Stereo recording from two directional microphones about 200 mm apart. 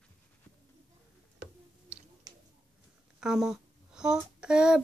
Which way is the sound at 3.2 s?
5° right (ahead or behind).